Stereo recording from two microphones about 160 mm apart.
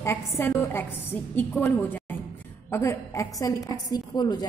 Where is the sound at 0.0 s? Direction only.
15° left (ahead or behind).